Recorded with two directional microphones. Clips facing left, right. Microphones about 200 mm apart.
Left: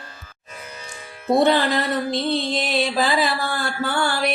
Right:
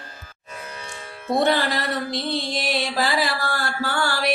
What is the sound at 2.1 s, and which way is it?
Mantra, 20° left (ahead or behind).